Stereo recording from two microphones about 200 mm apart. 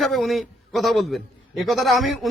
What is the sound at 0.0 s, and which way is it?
A man's voice, centre (ahead or behind).